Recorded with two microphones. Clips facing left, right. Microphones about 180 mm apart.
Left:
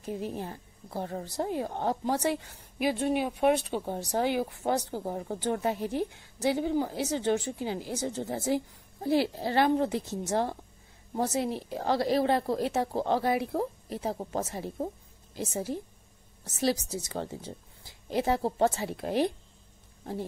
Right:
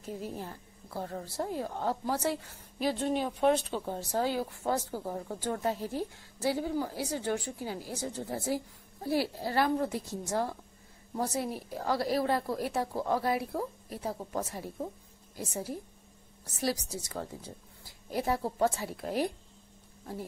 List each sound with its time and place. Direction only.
0.0 s speech: 20° left (ahead or behind)